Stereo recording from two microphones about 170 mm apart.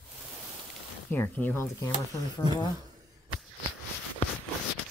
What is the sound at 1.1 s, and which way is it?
Speech, 10° left (ahead or behind).